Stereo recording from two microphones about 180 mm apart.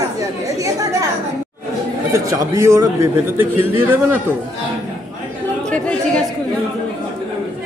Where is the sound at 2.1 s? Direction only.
15° right (ahead or behind).